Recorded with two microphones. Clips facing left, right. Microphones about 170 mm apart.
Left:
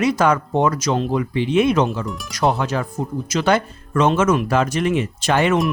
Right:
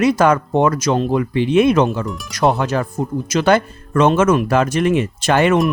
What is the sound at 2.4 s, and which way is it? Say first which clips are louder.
Speech: right 3 dB; 50° right (ahead or behind).